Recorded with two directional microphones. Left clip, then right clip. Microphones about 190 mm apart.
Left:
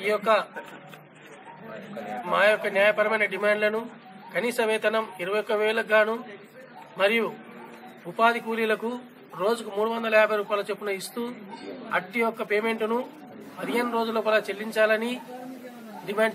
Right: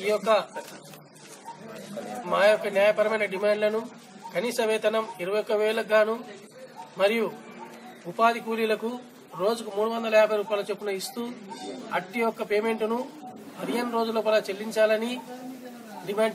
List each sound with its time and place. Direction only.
0.0 s speech: centre (ahead or behind)
2.2 s speech: centre (ahead or behind)